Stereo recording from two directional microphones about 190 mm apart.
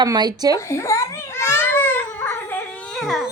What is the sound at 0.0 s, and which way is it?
Speech, 20° right (ahead or behind).